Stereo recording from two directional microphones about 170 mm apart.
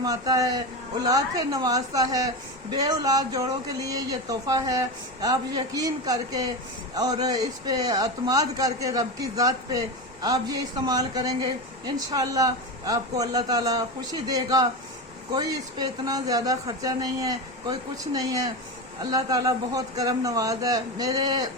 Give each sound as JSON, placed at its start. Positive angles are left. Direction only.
{"t": 0.0, "sound": "a man's voice", "side_deg": -20}